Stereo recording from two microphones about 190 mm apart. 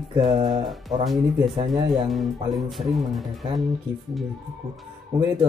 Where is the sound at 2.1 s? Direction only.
Centre (ahead or behind).